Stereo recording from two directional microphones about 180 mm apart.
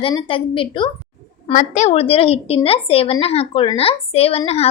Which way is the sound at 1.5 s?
40° left (ahead or behind).